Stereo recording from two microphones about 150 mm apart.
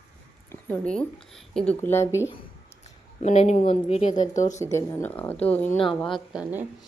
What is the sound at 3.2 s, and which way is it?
Speech, 50° left (ahead or behind).